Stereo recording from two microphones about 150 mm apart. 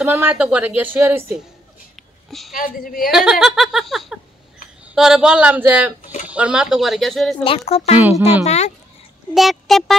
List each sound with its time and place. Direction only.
0.0 s a woman's voice: 10° right (ahead or behind)
2.0 s a sound: centre (ahead or behind)
2.5 s a woman's voice: 70° left (ahead or behind)
3.1 s a woman's voice: 5° right (ahead or behind)
7.4 s speech: 40° left (ahead or behind)
9.3 s speech: centre (ahead or behind)